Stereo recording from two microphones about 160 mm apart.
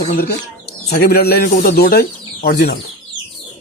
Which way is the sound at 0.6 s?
75° left (ahead or behind).